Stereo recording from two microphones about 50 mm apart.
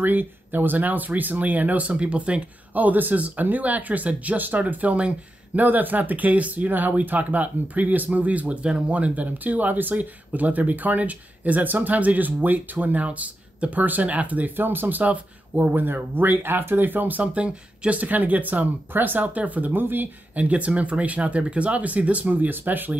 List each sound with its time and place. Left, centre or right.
0.0 s speech: right
20.3 s speech: right